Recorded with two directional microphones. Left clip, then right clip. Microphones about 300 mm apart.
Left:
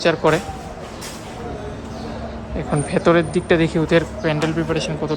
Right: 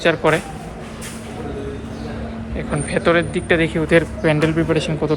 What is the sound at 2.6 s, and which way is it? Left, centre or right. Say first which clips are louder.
Speech: left 1 dB; centre.